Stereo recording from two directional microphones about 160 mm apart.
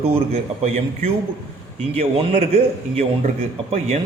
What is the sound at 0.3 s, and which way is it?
A man's voice, 40° right (ahead or behind).